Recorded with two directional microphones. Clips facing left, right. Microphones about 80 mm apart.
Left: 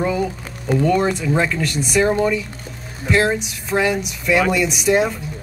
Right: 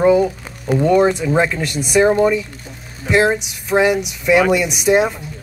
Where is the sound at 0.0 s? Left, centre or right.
Right.